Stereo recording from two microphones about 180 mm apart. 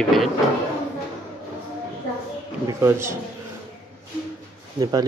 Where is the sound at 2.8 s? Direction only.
15° right (ahead or behind).